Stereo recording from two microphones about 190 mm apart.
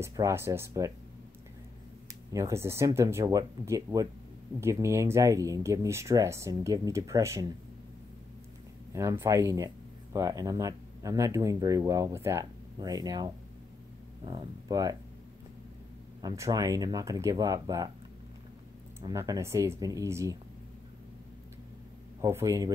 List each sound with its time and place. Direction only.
0.0 s speech: 15° right (ahead or behind)
2.3 s speech: 15° right (ahead or behind)
8.9 s speech: 15° right (ahead or behind)
16.2 s speech: 20° right (ahead or behind)
18.9 s speech: 15° right (ahead or behind)
22.2 s speech: 15° right (ahead or behind)